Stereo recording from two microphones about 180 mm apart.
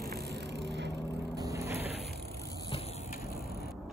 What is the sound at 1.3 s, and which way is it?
Vehicle, 20° right (ahead or behind).